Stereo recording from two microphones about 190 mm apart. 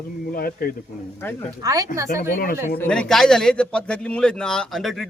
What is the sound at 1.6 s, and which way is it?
Speech, 15° right (ahead or behind).